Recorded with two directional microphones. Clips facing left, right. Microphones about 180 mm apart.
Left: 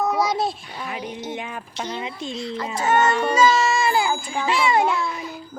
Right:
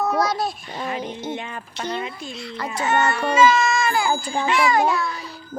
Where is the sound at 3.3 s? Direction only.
30° left (ahead or behind).